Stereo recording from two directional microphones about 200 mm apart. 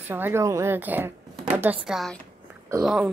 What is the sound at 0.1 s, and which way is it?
Speech, 10° right (ahead or behind).